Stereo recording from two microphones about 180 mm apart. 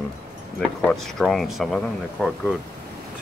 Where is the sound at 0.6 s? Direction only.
Centre (ahead or behind).